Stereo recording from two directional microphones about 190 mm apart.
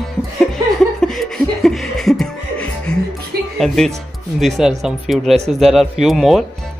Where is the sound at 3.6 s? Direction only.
Centre (ahead or behind).